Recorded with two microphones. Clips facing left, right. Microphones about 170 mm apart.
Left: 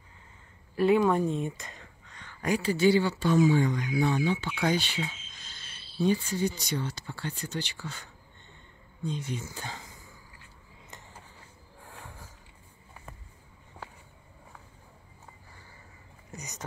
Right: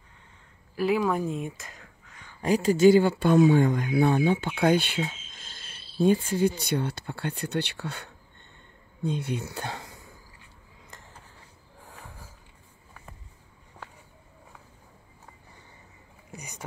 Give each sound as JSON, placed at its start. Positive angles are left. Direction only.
{"t": 0.7, "sound": "speech", "side_deg": 0}
{"t": 2.4, "sound": "speech", "side_deg": -40}
{"t": 11.8, "sound": "snort", "side_deg": -5}
{"t": 16.3, "sound": "speech", "side_deg": -10}